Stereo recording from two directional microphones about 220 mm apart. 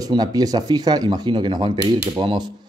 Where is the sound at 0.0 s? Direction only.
15° right (ahead or behind).